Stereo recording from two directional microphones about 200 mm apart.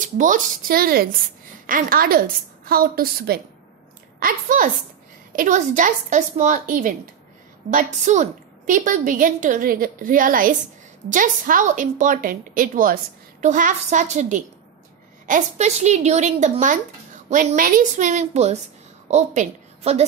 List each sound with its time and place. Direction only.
0.0 s a woman's voice: 40° right (ahead or behind)